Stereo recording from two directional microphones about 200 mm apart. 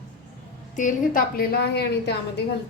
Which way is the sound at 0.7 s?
40° left (ahead or behind).